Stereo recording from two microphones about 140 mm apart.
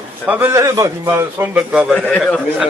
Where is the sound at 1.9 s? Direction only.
10° left (ahead or behind).